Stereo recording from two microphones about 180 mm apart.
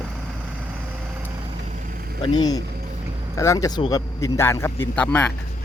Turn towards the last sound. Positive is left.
turn(degrees=10)  # may be behind; listen again after turning